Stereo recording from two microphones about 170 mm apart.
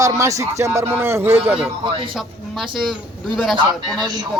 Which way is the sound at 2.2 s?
Centre (ahead or behind).